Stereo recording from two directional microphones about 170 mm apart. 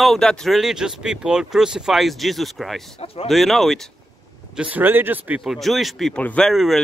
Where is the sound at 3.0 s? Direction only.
35° left (ahead or behind).